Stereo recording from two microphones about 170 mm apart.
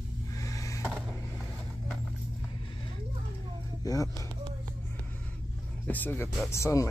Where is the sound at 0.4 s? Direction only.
20° left (ahead or behind).